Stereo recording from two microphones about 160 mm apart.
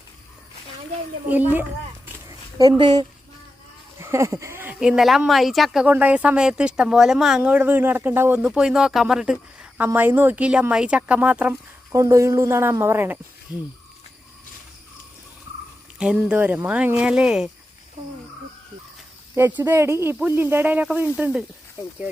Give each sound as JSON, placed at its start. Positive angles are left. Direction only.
{"t": 1.3, "sound": "speech", "side_deg": -10}
{"t": 2.2, "sound": "a sound", "side_deg": -25}
{"t": 4.0, "sound": "speech", "side_deg": -20}
{"t": 16.0, "sound": "speech", "side_deg": -5}
{"t": 19.4, "sound": "speech", "side_deg": -15}